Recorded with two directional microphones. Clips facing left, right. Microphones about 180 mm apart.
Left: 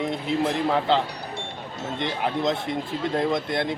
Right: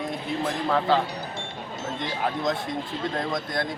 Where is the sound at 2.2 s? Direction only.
25° left (ahead or behind).